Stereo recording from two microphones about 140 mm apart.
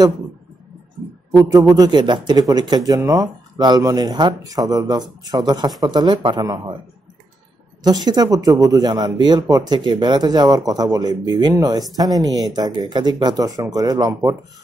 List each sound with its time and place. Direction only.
1.3 s speech: 20° right (ahead or behind)
7.8 s speech: 30° right (ahead or behind)